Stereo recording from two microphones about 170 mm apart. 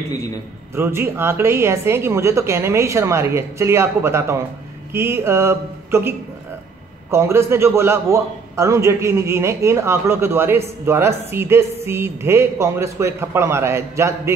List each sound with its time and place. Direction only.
0.7 s a woman's voice: 15° right (ahead or behind)